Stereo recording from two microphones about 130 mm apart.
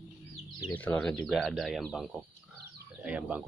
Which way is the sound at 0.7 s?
10° left (ahead or behind).